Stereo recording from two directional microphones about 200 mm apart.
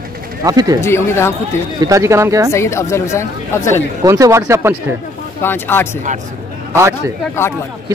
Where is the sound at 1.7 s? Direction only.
15° right (ahead or behind).